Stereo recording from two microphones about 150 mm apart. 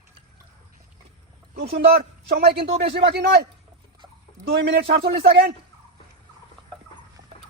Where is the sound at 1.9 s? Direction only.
90° right.